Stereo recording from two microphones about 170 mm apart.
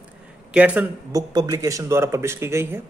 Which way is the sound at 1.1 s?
20° right (ahead or behind).